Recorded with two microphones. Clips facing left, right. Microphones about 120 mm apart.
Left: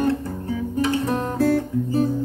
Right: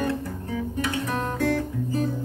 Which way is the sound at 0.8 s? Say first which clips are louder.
Left 8 dB; 30° left (ahead or behind).